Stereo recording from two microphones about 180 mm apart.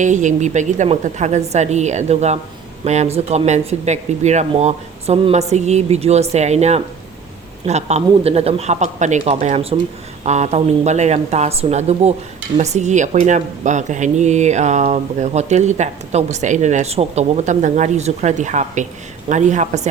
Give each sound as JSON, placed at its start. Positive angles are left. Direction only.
{"t": 0.0, "sound": "speech", "side_deg": -45}